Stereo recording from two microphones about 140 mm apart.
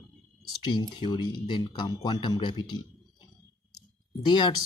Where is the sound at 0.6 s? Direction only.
35° left (ahead or behind).